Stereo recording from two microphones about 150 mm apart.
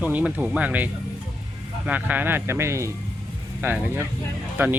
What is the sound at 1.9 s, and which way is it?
Speech, 10° right (ahead or behind).